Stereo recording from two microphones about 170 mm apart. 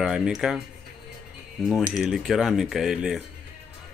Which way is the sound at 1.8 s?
5° right (ahead or behind).